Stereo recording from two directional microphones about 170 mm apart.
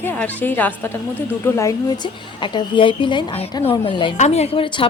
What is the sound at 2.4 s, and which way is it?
Speech, 30° left (ahead or behind).